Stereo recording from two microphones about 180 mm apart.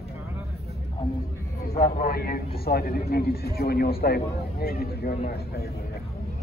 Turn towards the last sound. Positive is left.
turn(degrees=55)  # may be behind; listen again after turning